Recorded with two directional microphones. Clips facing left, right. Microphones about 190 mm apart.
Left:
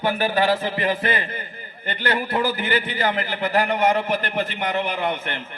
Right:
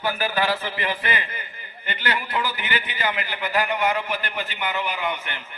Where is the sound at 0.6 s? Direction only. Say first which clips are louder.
Left 5 dB; 45° left (ahead or behind).